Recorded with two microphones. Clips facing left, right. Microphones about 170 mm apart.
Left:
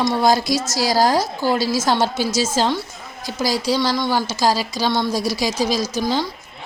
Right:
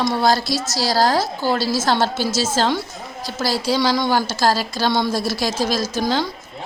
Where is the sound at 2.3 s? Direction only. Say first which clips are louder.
Left 1 dB; 15° left (ahead or behind).